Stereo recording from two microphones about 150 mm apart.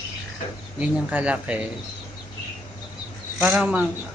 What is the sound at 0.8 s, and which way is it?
Speech, 10° right (ahead or behind).